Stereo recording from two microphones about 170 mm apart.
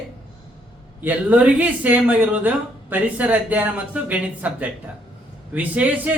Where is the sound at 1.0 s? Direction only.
10° right (ahead or behind).